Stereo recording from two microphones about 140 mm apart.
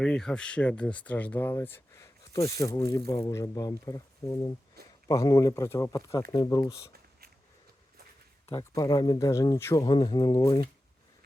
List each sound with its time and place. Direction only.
0.0 s speech: 5° left (ahead or behind); by 6.8 s 25° left (ahead or behind)
8.7 s speech: 25° left (ahead or behind)